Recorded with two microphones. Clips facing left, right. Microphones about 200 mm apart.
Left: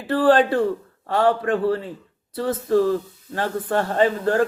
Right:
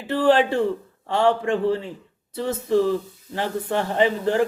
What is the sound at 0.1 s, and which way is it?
A man's voice, 20° right (ahead or behind).